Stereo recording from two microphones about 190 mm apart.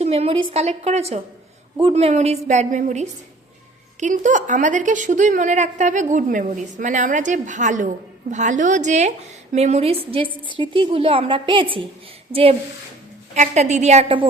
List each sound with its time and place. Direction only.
0.0 s a woman's voice: 35° right (ahead or behind)